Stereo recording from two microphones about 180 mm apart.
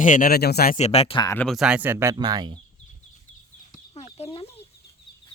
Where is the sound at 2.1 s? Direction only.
20° right (ahead or behind).